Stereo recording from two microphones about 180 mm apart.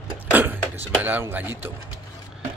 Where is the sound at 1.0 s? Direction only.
10° right (ahead or behind).